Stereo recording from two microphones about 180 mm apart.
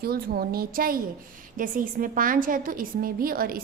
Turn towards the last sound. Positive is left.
turn(degrees=-55)  # may be behind; listen again after turning